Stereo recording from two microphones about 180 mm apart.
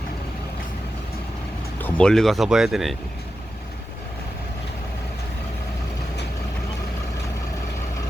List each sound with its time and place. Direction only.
1.8 s speech: 5° left (ahead or behind)